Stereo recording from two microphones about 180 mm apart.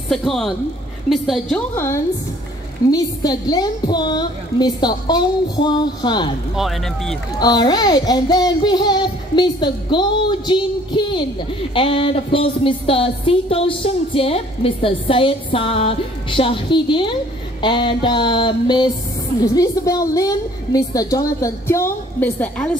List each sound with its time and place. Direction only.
0.1 s speech: centre (ahead or behind)
2.9 s a woman's voice: 20° left (ahead or behind)
6.5 s speech: centre (ahead or behind)
7.3 s a woman's voice: 20° left (ahead or behind)